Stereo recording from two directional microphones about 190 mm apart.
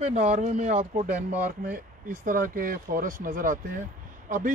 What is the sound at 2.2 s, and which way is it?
A man's voice, 45° right (ahead or behind).